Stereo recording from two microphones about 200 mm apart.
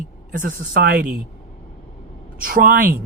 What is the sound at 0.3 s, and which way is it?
Speech, 45° right (ahead or behind).